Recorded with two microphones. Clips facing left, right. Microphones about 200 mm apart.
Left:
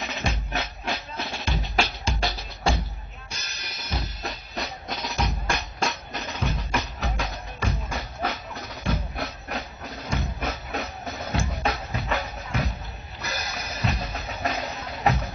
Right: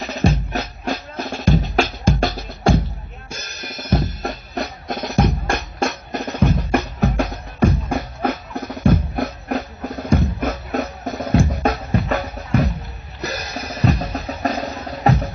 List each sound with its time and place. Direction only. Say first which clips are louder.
0.0 s music: right 10 dB; 35° right (ahead or behind); by 2.8 s 50° right (ahead or behind)
3.3 s drum kit: right 9 dB; 50° right (ahead or behind)
4.8 s music: right 12 dB; 50° right (ahead or behind)
13.2 s drum kit: right 7 dB; 40° right (ahead or behind)